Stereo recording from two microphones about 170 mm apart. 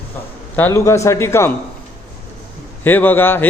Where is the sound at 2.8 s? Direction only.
10° left (ahead or behind).